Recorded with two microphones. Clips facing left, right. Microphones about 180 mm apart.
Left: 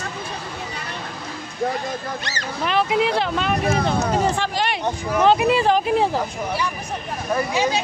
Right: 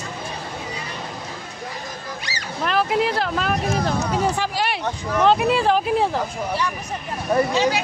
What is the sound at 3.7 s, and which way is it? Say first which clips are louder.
Speech: left 2 dB; 50° left (ahead or behind).